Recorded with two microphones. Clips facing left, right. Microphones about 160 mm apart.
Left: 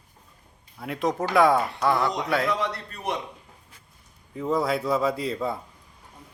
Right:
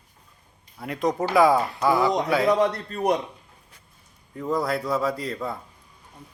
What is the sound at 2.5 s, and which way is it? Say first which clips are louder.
Speech: right 7 dB; 45° right (ahead or behind).